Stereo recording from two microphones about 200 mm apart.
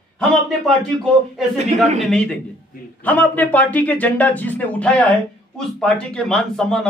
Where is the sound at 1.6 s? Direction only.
35° right (ahead or behind).